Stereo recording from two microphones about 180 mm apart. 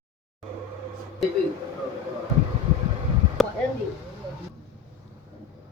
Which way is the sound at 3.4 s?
Centre (ahead or behind).